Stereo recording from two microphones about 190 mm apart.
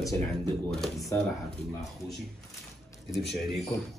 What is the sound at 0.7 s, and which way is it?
Speech, centre (ahead or behind).